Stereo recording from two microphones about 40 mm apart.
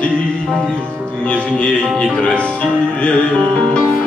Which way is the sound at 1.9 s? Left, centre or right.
Left.